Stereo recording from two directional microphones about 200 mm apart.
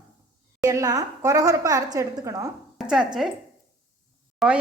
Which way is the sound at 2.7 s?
5° right (ahead or behind).